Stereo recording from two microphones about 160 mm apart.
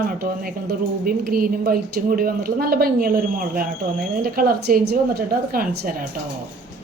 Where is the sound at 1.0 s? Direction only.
65° right (ahead or behind).